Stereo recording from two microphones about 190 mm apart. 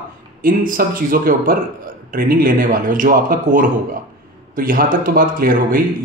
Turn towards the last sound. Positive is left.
turn(degrees=-50)  # may be behind; listen again after turning